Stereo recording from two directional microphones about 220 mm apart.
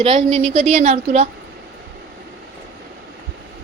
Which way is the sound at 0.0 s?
30° right (ahead or behind).